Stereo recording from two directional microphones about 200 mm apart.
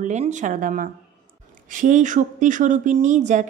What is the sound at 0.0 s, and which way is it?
A woman's voice, 35° right (ahead or behind).